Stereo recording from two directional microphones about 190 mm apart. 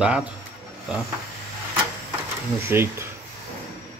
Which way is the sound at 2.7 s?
10° right (ahead or behind).